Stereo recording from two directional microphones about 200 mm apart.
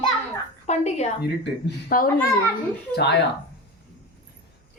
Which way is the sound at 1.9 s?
45° left (ahead or behind).